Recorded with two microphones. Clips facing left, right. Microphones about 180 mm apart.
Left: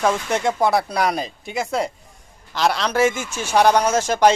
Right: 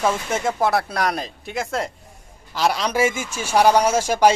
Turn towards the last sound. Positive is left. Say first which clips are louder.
# even
turn(degrees=-10)  # may be behind; listen again after turning